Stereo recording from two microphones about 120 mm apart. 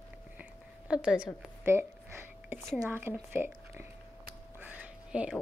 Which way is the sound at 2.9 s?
15° right (ahead or behind).